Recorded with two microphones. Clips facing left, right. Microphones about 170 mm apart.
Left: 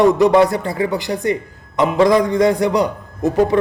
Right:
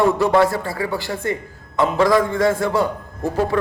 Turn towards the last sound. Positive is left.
turn(degrees=20)  # may be behind; listen again after turning